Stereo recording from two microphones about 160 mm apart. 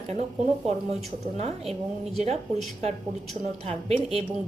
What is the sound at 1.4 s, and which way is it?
A woman's voice, 40° right (ahead or behind).